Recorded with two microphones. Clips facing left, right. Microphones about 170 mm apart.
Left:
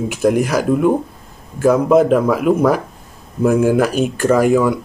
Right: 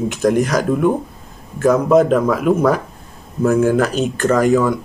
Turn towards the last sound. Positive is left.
turn(degrees=10)  # may be behind; listen again after turning